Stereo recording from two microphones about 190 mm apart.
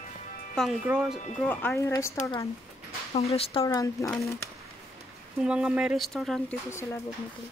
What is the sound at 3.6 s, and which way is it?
Speech, 15° left (ahead or behind).